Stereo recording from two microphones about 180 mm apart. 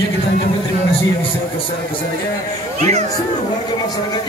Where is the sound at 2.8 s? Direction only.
40° right (ahead or behind).